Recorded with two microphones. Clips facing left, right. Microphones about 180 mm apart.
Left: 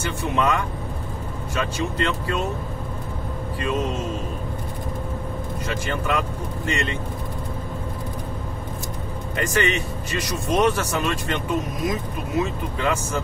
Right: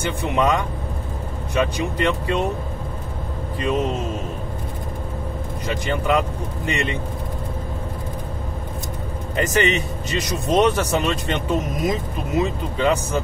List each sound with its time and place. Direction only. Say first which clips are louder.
0.0 s speech: right 2 dB; 20° right (ahead or behind)
3.5 s speech: right 3 dB; 20° right (ahead or behind)
5.7 s speech: right 5 dB; 20° right (ahead or behind)
9.4 s speech: right 3 dB; 20° right (ahead or behind)